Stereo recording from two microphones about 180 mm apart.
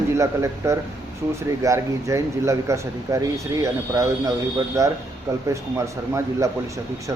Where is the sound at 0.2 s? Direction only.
15° right (ahead or behind).